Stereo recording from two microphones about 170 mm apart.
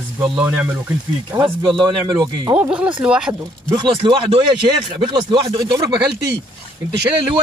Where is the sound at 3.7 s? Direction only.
30° right (ahead or behind).